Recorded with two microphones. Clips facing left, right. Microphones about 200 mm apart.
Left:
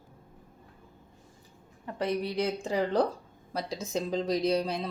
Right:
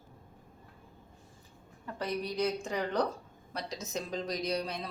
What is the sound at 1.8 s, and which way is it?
Speech, 25° left (ahead or behind).